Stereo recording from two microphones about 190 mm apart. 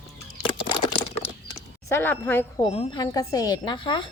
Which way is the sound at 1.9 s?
10° left (ahead or behind).